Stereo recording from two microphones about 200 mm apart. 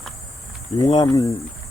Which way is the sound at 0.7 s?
20° left (ahead or behind).